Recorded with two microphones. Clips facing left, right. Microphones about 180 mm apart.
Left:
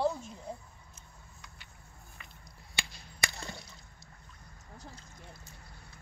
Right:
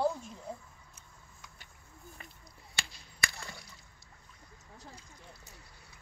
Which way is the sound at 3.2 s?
20° left (ahead or behind).